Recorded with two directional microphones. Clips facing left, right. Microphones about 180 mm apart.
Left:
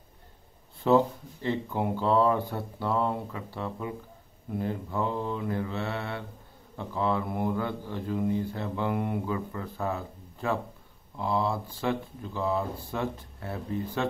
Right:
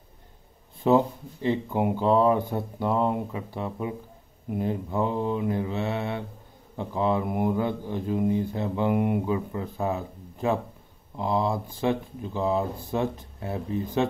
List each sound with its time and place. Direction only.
0.8 s speech: 15° right (ahead or behind)